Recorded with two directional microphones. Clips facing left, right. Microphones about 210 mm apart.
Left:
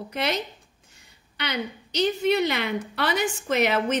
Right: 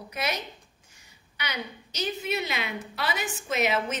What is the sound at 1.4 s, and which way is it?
A woman's voice, 65° left (ahead or behind).